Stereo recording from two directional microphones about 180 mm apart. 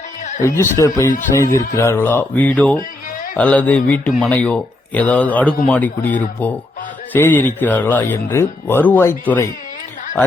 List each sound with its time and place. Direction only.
0.4 s speech: 15° left (ahead or behind)